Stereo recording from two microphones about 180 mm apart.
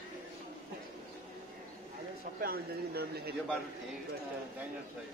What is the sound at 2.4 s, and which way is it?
Speech, 55° right (ahead or behind).